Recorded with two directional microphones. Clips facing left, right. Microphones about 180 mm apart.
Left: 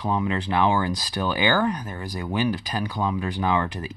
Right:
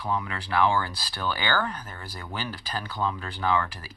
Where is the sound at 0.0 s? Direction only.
20° left (ahead or behind).